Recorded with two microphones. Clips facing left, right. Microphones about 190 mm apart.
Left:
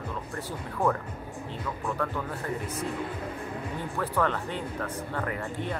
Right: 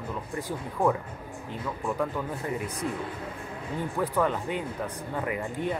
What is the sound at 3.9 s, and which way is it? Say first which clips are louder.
Speech: right 1 dB; 10° right (ahead or behind).